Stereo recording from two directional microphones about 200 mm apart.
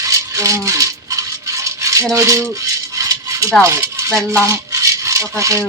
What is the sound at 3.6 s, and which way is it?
Speech, 15° right (ahead or behind).